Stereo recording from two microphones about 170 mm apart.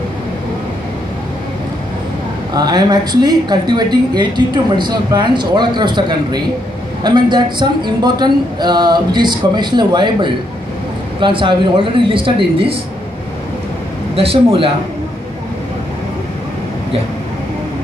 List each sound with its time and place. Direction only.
2.5 s speech: 25° right (ahead or behind)
14.1 s speech: 35° right (ahead or behind)